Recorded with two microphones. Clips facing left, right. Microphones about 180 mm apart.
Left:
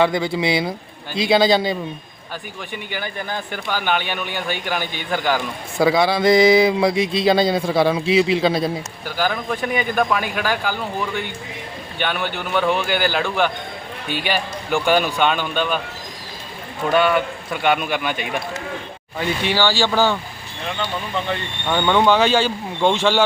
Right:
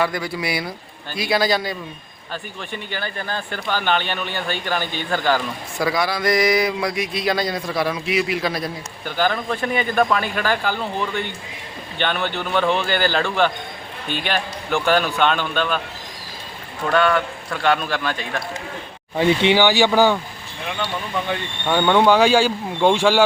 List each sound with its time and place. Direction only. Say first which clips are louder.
0.0 s speech: left 5 dB; 25° left (ahead or behind)
2.7 s speech: even; 15° left (ahead or behind)
5.8 s speech: left 5 dB; 25° left (ahead or behind)
9.0 s speech: right 1 dB; 5° left (ahead or behind)
16.9 s speech: left 1 dB; 5° left (ahead or behind)
19.2 s speech: right 4 dB; 20° right (ahead or behind)